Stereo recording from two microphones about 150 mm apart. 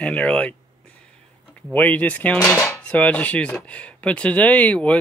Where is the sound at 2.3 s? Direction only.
25° left (ahead or behind).